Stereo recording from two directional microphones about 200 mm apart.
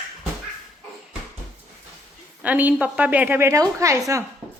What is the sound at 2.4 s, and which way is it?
A woman's voice, 10° right (ahead or behind).